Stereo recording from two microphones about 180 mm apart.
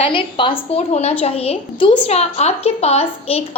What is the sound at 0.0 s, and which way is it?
A woman's voice, 30° left (ahead or behind).